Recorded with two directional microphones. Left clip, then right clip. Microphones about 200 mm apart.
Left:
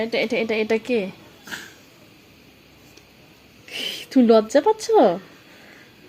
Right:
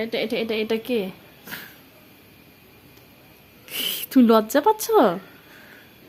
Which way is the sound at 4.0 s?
15° right (ahead or behind).